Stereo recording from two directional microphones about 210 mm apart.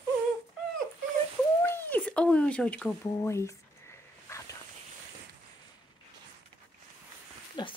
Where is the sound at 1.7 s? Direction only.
10° left (ahead or behind).